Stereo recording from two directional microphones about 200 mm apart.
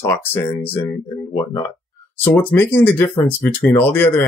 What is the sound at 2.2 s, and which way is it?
Speech, 10° left (ahead or behind).